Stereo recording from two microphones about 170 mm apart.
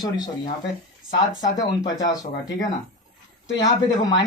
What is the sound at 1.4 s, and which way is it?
A man's voice, 20° left (ahead or behind).